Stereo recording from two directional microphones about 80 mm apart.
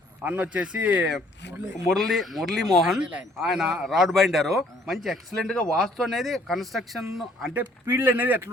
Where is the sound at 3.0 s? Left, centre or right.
Centre.